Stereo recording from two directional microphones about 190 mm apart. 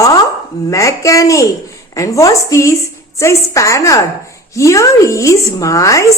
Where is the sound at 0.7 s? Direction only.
15° left (ahead or behind).